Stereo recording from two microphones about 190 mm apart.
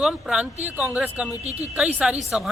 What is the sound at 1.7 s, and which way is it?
Speech, 5° right (ahead or behind).